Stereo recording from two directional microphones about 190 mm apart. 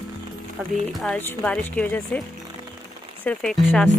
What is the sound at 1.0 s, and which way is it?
Speech, 5° left (ahead or behind).